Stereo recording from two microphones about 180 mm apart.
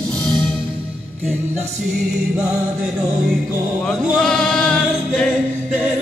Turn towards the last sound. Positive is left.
turn(degrees=5)  # may be behind; listen again after turning